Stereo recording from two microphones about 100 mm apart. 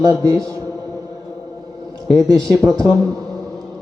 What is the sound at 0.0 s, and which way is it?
Speech, 35° right (ahead or behind).